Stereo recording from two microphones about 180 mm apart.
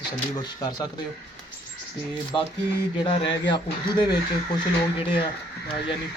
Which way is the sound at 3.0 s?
25° left (ahead or behind).